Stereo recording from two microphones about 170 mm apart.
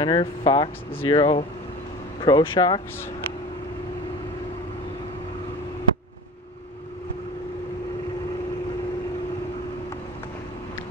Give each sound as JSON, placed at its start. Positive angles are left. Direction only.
{"t": 0.0, "sound": "speech", "side_deg": 30}